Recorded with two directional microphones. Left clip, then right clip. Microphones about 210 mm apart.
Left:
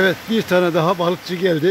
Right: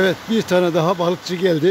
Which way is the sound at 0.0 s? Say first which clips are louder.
Left 1 dB; 10° right (ahead or behind).